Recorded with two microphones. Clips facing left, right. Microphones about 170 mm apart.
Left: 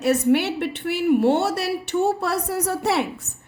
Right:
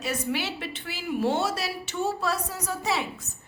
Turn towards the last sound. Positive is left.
turn(degrees=65)  # may be behind; listen again after turning